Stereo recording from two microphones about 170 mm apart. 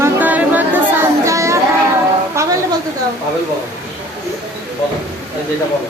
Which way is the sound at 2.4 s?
15° right (ahead or behind).